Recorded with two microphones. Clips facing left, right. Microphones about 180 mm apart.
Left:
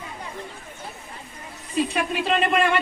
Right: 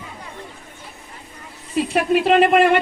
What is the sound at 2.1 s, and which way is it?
Speech, 65° right (ahead or behind).